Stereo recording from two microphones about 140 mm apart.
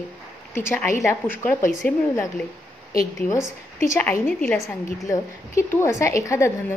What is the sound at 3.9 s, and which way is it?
A woman's voice, 20° left (ahead or behind).